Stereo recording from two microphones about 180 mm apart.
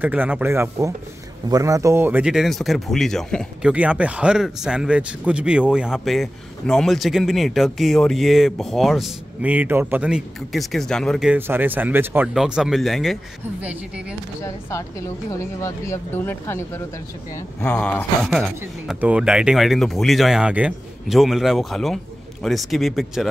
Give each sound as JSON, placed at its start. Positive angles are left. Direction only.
{"t": 0.0, "sound": "speech", "side_deg": -10}
{"t": 3.7, "sound": "speech", "side_deg": -5}
{"t": 14.4, "sound": "speech", "side_deg": 15}